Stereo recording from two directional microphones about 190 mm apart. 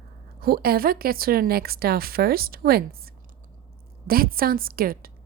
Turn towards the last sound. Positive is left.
turn(degrees=-50)  # may be behind; listen again after turning